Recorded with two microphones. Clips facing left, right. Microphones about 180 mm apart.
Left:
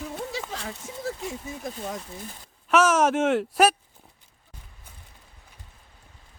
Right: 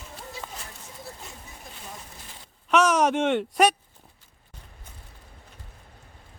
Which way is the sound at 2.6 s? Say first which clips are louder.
Left 1 dB; 5° left (ahead or behind).